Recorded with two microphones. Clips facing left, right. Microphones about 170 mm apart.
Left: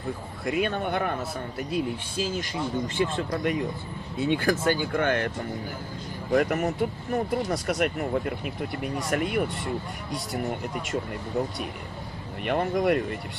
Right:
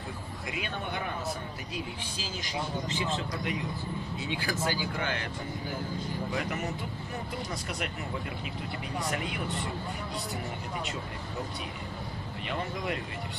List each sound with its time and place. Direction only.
0.5 s speech: 50° left (ahead or behind)
2.1 s speech: 50° left (ahead or behind)
6.3 s speech: 55° left (ahead or behind)
7.8 s speech: 50° left (ahead or behind)
12.4 s speech: 55° left (ahead or behind)